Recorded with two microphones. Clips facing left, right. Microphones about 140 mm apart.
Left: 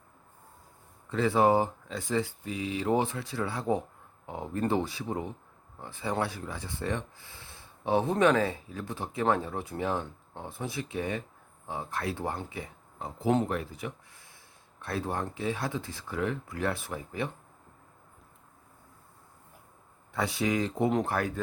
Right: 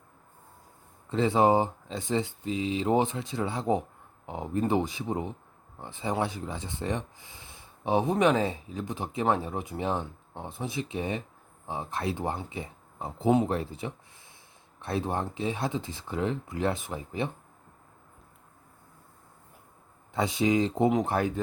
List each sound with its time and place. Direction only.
1.1 s speech: 20° right (ahead or behind)
12.5 s a sound: 25° right (ahead or behind)
13.5 s speech: 30° right (ahead or behind)
20.1 s speech: 20° right (ahead or behind)